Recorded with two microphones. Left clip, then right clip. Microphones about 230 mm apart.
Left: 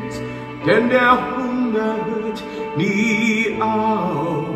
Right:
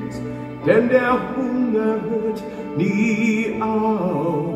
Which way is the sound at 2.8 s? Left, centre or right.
Left.